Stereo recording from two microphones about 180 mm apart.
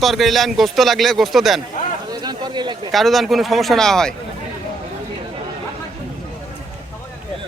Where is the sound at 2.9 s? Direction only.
Centre (ahead or behind).